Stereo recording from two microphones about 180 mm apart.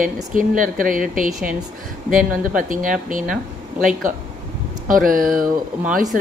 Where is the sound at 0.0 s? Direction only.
50° right (ahead or behind).